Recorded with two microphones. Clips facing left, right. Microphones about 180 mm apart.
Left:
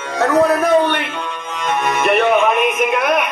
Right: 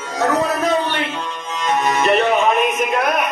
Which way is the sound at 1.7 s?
55° left (ahead or behind).